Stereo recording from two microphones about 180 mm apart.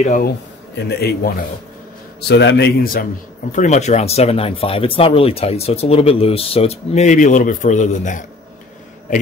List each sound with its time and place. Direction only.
0.0 s a man's voice: 45° left (ahead or behind)
0.8 s speech: 60° left (ahead or behind)
2.2 s a man's voice: 70° left (ahead or behind); by 3.1 s 55° left (ahead or behind)
3.5 s speech: 40° left (ahead or behind)